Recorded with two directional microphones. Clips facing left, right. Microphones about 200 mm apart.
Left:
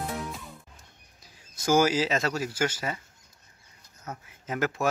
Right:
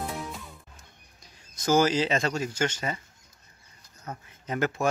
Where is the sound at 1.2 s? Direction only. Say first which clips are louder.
Even; 5° left (ahead or behind).